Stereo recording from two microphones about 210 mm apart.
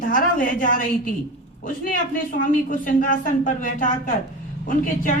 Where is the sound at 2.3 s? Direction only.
40° left (ahead or behind).